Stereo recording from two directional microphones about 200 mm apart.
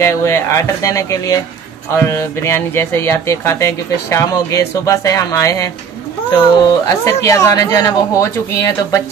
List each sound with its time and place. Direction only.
0.0 s speech: 15° left (ahead or behind)